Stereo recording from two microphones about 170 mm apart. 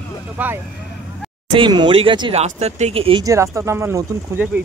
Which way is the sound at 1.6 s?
30° right (ahead or behind).